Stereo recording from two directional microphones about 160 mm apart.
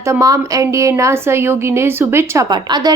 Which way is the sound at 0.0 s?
20° right (ahead or behind).